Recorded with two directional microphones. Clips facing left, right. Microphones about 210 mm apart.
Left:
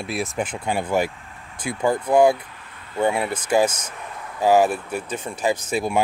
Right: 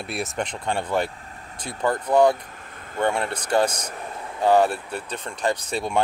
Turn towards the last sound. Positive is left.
turn(degrees=5)  # may be behind; listen again after turning